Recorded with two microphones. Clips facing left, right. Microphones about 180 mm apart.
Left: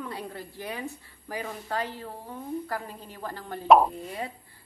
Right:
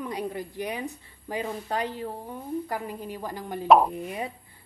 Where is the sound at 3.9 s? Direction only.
15° right (ahead or behind).